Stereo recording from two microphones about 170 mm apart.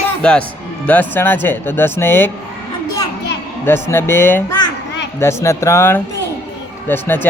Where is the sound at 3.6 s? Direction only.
15° left (ahead or behind).